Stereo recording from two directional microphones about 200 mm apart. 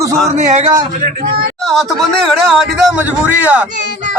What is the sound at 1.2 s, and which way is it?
Speech, 45° right (ahead or behind).